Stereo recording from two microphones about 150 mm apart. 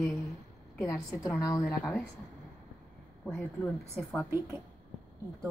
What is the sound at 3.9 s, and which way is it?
Speech, 5° left (ahead or behind).